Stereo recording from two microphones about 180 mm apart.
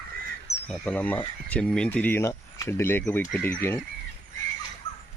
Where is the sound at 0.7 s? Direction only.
10° left (ahead or behind).